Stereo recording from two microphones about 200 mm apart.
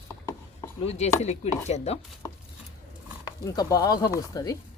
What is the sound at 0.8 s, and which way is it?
Chopping, 35° left (ahead or behind).